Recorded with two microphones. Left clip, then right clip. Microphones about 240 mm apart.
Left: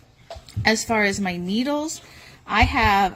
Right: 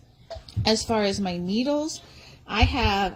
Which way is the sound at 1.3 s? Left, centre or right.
Left.